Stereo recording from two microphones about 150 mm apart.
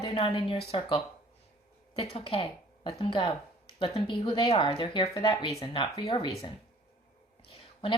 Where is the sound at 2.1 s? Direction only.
35° left (ahead or behind).